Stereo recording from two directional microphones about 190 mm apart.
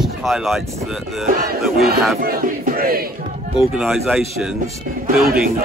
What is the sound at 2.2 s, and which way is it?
Battle cry, 50° right (ahead or behind).